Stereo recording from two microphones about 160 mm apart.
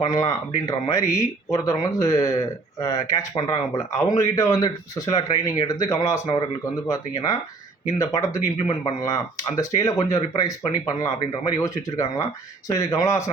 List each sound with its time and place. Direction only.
0.0 s speech: 20° left (ahead or behind)